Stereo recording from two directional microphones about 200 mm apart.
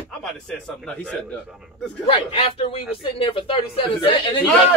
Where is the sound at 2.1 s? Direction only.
25° left (ahead or behind).